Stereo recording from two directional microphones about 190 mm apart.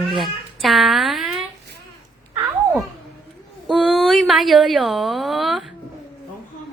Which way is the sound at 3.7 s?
Centre (ahead or behind).